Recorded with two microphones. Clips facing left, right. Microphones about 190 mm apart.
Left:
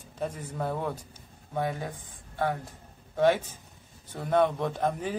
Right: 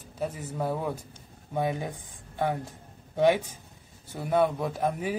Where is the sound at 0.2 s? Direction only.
5° right (ahead or behind).